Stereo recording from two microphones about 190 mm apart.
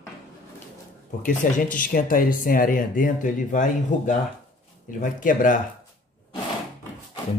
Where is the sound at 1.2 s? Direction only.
45° left (ahead or behind).